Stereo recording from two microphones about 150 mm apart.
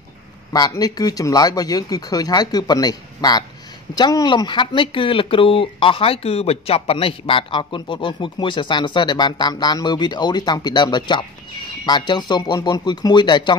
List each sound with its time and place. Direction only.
0.5 s speech: 25° left (ahead or behind)